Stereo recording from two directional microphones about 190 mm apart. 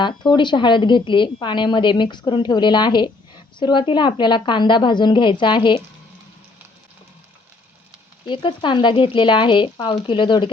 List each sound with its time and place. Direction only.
0.2 s a woman's voice: 25° left (ahead or behind)
8.3 s a woman's voice: 25° left (ahead or behind)